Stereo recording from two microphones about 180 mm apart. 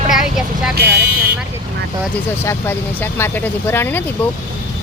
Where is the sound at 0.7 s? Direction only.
65° right (ahead or behind).